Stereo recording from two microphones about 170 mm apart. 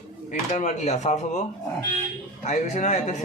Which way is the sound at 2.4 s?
45° left (ahead or behind).